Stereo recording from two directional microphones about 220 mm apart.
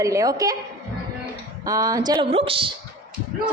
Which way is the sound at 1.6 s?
15° right (ahead or behind).